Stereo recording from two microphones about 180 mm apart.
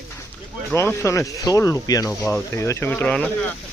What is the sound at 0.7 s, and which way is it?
Speech, 15° left (ahead or behind).